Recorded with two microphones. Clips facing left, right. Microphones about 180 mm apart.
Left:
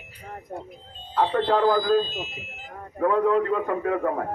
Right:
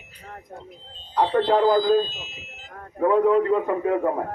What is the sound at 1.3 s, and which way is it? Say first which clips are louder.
Speech: right 3 dB; 15° right (ahead or behind).